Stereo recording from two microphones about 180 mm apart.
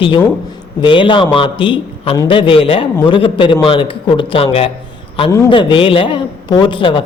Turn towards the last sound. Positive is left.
turn(degrees=25)  # may be behind; listen again after turning